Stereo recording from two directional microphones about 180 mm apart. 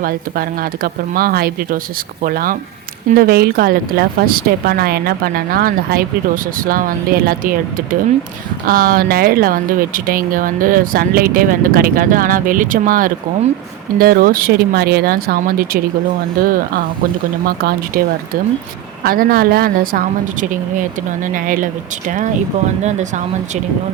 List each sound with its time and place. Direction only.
0.0 s speech: 55° right (ahead or behind)
19.0 s speech: 55° right (ahead or behind)
22.8 s speech: 40° right (ahead or behind)